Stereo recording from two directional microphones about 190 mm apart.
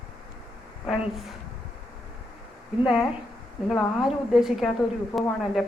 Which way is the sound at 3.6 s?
Centre (ahead or behind).